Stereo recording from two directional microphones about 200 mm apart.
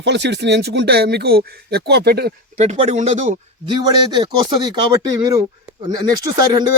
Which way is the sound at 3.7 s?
20° right (ahead or behind).